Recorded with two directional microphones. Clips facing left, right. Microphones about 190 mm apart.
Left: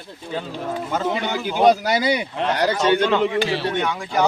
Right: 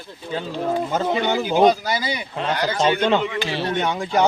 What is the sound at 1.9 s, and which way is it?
Speech, 65° left (ahead or behind).